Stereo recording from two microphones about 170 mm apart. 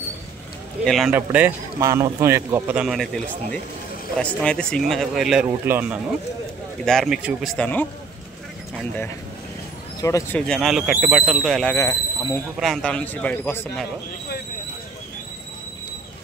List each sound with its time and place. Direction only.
0.8 s speech: centre (ahead or behind)
1.1 s speech: 10° right (ahead or behind)
4.2 s speech: 5° left (ahead or behind); by 5.9 s 10° right (ahead or behind)
6.8 s speech: centre (ahead or behind)
7.5 s a man's voice: 10° left (ahead or behind)
9.9 s a man's voice: 20° left (ahead or behind)
10.4 s speech: centre (ahead or behind)
11.7 s speech: 20° left (ahead or behind)
12.5 s a man's voice: centre (ahead or behind)